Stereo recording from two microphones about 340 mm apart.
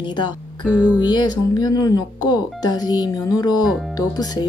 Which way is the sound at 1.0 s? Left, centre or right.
Centre.